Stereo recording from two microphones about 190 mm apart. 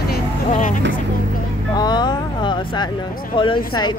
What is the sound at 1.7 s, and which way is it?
Speech, 20° left (ahead or behind).